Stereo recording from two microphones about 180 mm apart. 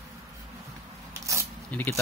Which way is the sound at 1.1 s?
15° right (ahead or behind).